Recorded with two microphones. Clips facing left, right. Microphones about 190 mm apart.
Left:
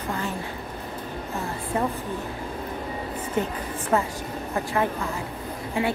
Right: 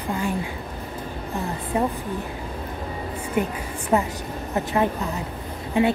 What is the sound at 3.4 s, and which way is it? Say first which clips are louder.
A woman's voice: right 2 dB; 15° right (ahead or behind).